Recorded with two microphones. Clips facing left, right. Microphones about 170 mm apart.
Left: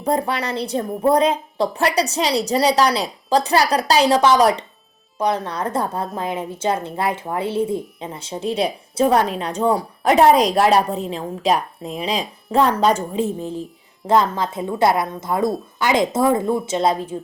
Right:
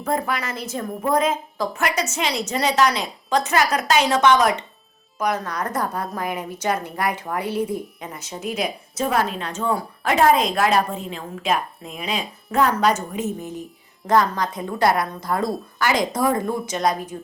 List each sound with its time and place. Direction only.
0.0 s a woman's voice: 30° left (ahead or behind)